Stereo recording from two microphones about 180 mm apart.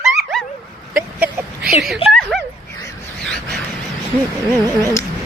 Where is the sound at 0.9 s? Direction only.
10° right (ahead or behind).